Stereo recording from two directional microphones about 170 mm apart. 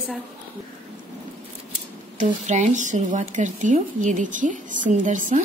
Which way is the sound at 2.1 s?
45° right (ahead or behind).